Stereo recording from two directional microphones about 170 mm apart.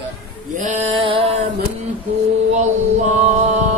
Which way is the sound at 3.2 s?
40° right (ahead or behind).